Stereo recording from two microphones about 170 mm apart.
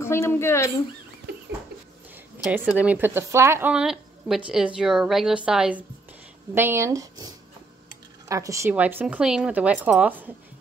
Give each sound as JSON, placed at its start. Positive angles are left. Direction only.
{"t": 0.0, "sound": "speech", "side_deg": 15}
{"t": 2.4, "sound": "speech", "side_deg": -10}